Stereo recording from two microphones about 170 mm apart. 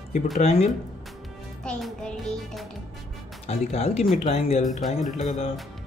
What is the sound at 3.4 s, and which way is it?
Speech, 40° left (ahead or behind).